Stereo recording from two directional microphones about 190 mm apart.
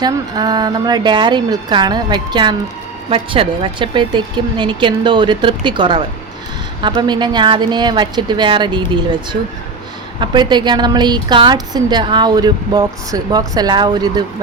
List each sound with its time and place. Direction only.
0.0 s a woman's voice: 20° right (ahead or behind)